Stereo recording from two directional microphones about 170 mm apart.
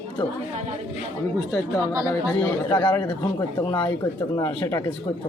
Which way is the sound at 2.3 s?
10° left (ahead or behind).